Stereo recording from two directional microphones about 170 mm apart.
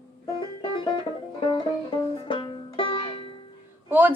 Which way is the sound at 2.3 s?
30° left (ahead or behind).